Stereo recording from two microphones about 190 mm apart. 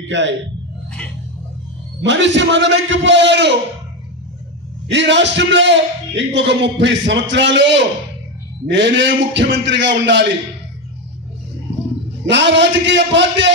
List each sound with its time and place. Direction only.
0.0 s a man's voice: 70° right (ahead or behind)
2.0 s a man's voice: 70° right (ahead or behind)
4.8 s a man's voice: 70° right (ahead or behind)
12.3 s a man's voice: 70° right (ahead or behind)